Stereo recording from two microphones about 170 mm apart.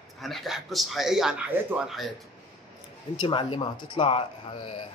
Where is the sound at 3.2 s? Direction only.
30° left (ahead or behind).